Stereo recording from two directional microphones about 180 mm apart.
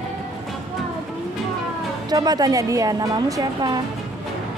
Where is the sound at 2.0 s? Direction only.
20° right (ahead or behind).